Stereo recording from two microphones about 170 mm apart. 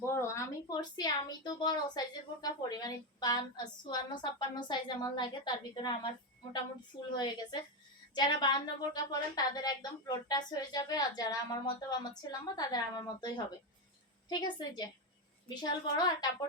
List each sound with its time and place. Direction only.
0.0 s a woman's voice: 15° left (ahead or behind)
8.1 s a woman's voice: 25° left (ahead or behind)